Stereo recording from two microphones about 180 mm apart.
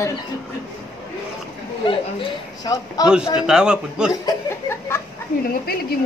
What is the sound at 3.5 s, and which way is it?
Speech, 5° right (ahead or behind).